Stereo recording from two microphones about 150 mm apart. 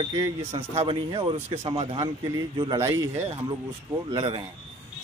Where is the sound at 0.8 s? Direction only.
35° right (ahead or behind).